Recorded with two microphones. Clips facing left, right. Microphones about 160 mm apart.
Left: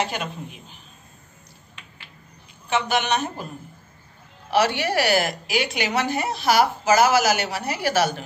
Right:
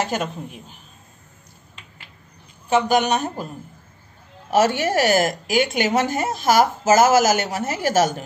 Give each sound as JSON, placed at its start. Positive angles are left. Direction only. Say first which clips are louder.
{"t": 0.0, "sound": "a woman's voice", "louder": "right 3 dB", "side_deg": -45}
{"t": 2.7, "sound": "a woman's voice", "louder": "right 5 dB", "side_deg": -40}
{"t": 4.5, "sound": "a woman's voice", "louder": "right 3 dB", "side_deg": -45}